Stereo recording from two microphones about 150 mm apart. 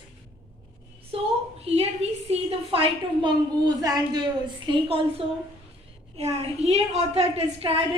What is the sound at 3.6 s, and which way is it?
A woman's voice, 25° right (ahead or behind).